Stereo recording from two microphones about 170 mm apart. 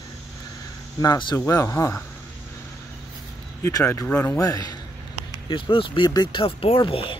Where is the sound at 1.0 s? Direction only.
20° left (ahead or behind).